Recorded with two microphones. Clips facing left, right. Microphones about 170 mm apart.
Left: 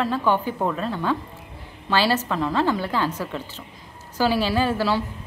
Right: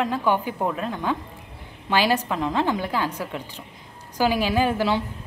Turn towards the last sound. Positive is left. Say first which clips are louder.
# even
turn(degrees=-20)  # may be behind; listen again after turning